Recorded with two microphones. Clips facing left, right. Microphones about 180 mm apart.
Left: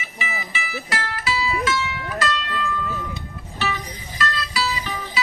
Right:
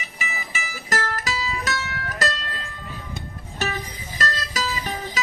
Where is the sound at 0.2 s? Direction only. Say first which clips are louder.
Left 3 dB; 45° right (ahead or behind).